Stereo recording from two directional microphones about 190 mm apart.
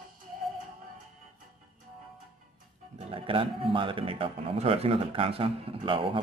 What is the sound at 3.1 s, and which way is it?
A man's voice, 25° right (ahead or behind).